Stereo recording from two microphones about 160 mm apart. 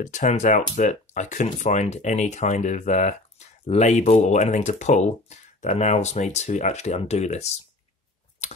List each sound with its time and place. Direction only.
0.0 s speech: 50° left (ahead or behind)